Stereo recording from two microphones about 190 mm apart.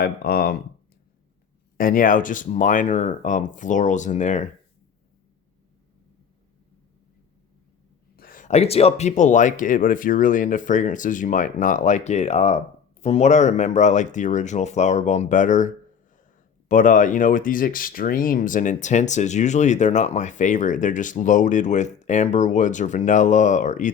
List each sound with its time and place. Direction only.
0.0 s speech: 55° left (ahead or behind)
1.8 s speech: 45° left (ahead or behind)
8.1 s speech: 50° left (ahead or behind)